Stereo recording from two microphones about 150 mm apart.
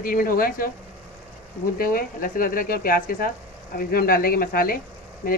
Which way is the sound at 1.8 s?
70° left (ahead or behind).